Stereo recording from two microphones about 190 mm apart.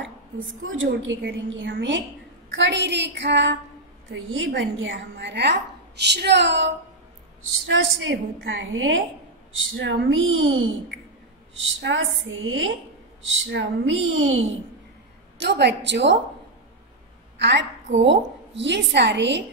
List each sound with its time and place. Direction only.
0.6 s speech: 90° right
1.0 s a woman's voice: 80° right
4.1 s a woman's voice: 85° right; by 6.7 s 65° right (ahead or behind)
7.6 s a woman's voice: 80° right
13.5 s speech: 75° right (ahead or behind)
15.3 s a woman's voice: 65° right (ahead or behind)
17.4 s a woman's voice: 65° right (ahead or behind)